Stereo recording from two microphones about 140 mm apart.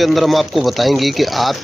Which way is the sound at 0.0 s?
Centre (ahead or behind).